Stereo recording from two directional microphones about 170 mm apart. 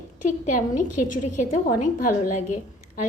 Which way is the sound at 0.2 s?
50° left (ahead or behind).